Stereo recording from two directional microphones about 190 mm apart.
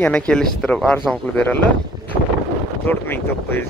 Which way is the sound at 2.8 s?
10° left (ahead or behind).